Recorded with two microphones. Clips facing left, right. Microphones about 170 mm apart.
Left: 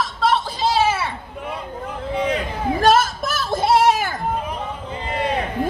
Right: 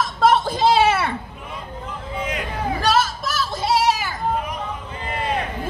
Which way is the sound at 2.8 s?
50° left (ahead or behind).